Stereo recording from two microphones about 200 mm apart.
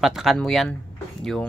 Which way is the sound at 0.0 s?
Centre (ahead or behind).